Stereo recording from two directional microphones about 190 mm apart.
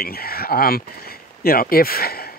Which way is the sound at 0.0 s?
50° left (ahead or behind).